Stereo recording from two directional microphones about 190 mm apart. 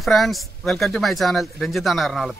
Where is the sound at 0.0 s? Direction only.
Centre (ahead or behind).